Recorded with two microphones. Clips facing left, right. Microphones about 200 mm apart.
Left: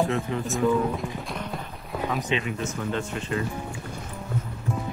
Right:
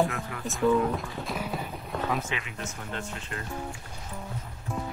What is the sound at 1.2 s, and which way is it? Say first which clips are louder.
Clip-clop: right 1 dB; 5° right (ahead or behind).